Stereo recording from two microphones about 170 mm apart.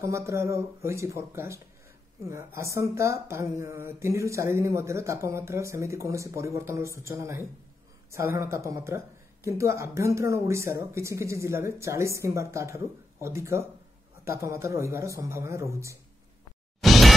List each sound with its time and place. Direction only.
0.0 s speech: 15° right (ahead or behind)
16.8 s music: centre (ahead or behind)